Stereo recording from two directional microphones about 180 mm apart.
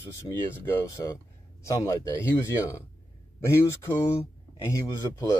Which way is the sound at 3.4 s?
15° left (ahead or behind).